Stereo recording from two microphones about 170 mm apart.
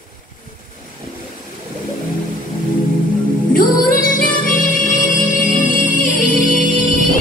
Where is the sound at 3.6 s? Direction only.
55° left (ahead or behind).